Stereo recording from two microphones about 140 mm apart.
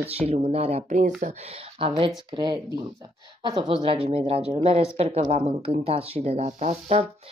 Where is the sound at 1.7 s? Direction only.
40° right (ahead or behind).